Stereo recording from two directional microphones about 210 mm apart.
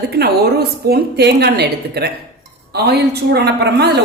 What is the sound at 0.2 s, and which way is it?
A woman's voice, 50° right (ahead or behind).